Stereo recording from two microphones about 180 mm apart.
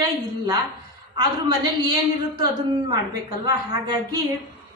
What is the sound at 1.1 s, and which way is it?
Speech, 25° right (ahead or behind).